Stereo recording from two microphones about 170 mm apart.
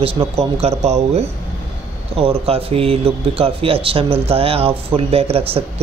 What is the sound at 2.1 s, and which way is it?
A man's voice, 35° right (ahead or behind).